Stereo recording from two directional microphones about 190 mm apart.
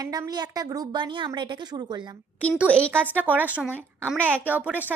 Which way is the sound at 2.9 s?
10° right (ahead or behind).